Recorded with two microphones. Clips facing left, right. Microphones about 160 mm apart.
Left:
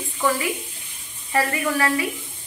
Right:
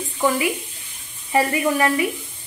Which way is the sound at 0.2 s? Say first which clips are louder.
Right 3 dB; 15° right (ahead or behind).